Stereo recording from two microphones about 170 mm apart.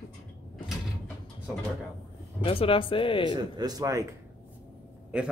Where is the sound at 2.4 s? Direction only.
30° left (ahead or behind).